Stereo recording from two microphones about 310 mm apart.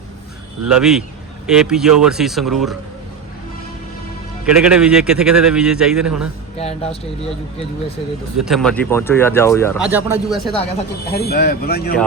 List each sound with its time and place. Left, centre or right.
0.7 s speech: centre
4.4 s speech: centre
6.6 s speech: centre
8.4 s speech: centre
11.1 s speech: left